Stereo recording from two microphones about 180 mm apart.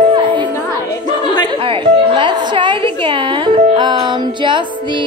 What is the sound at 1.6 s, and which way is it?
Music, 30° right (ahead or behind).